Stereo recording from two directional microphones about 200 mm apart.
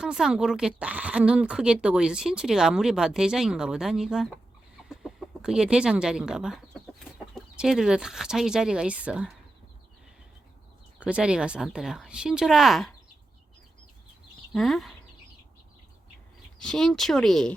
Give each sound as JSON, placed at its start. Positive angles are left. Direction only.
{"t": 0.0, "sound": "speech", "side_deg": -5}
{"t": 4.9, "sound": "chicken", "side_deg": 0}
{"t": 7.3, "sound": "speech", "side_deg": -5}
{"t": 11.0, "sound": "speech", "side_deg": -5}
{"t": 14.5, "sound": "speech", "side_deg": 0}
{"t": 16.6, "sound": "speech", "side_deg": 0}